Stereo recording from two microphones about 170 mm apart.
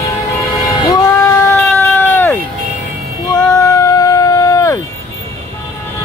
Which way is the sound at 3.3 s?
20° left (ahead or behind).